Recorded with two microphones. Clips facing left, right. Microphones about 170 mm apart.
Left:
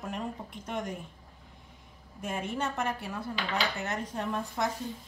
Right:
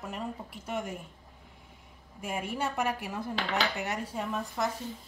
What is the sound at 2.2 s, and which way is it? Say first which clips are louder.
Speech: even; 10° right (ahead or behind).